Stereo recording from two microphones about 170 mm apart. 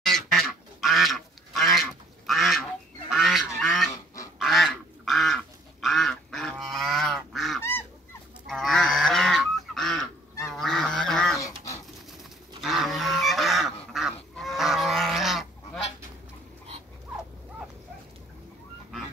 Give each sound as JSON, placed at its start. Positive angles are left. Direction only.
{"t": 0.0, "sound": "duck", "side_deg": 5}
{"t": 3.1, "sound": "goose", "side_deg": 0}
{"t": 4.4, "sound": "duck", "side_deg": 0}
{"t": 8.5, "sound": "goose", "side_deg": 0}
{"t": 11.3, "sound": "dog", "side_deg": 20}
{"t": 12.6, "sound": "goose", "side_deg": 0}